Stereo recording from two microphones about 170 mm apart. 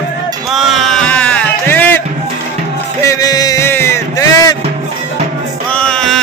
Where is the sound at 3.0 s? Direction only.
20° left (ahead or behind).